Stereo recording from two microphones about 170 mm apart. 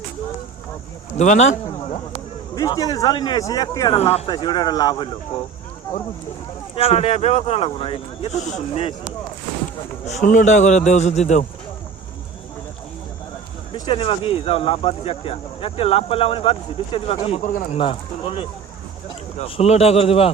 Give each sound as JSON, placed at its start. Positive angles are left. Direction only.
{"t": 1.1, "sound": "a man's voice", "side_deg": 45}
{"t": 2.6, "sound": "speech", "side_deg": 20}
{"t": 6.7, "sound": "speech", "side_deg": 35}
{"t": 10.1, "sound": "a man's voice", "side_deg": 45}
{"t": 13.7, "sound": "speech", "side_deg": 30}